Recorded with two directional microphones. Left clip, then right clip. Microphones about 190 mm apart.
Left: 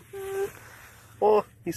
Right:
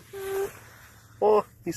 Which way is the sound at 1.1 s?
Centre (ahead or behind).